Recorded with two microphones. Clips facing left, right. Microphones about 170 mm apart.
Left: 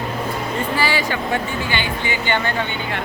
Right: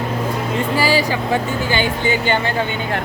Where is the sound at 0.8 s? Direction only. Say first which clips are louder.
Right 5 dB; 35° right (ahead or behind).